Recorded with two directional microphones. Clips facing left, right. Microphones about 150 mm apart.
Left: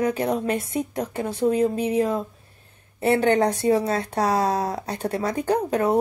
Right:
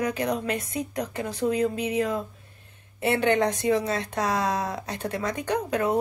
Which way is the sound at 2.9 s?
40° left (ahead or behind).